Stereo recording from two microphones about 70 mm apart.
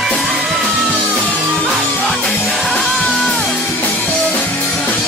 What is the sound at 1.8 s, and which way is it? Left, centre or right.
Music, left.